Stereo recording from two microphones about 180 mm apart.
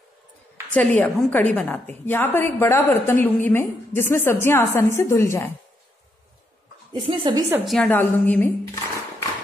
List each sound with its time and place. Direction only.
0.7 s a woman's voice: 10° left (ahead or behind)
6.9 s speech: 30° right (ahead or behind)
7.6 s a woman's voice: centre (ahead or behind)
8.0 s a woman's voice: 10° left (ahead or behind)